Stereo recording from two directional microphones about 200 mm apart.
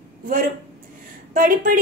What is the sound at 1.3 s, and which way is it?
Speech, 45° right (ahead or behind).